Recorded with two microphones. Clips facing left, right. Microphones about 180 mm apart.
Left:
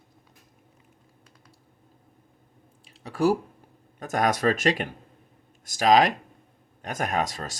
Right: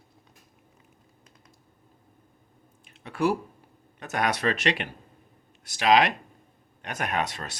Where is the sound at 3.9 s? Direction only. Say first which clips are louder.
Left 3 dB; 45° left (ahead or behind).